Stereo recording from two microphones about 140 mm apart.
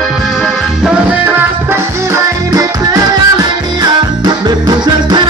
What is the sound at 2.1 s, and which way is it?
Music, 25° right (ahead or behind).